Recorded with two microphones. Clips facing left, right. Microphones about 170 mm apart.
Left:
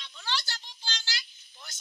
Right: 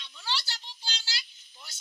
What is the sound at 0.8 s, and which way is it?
Child singing, 10° right (ahead or behind).